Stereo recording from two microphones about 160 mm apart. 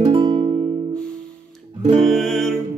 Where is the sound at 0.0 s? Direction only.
35° right (ahead or behind).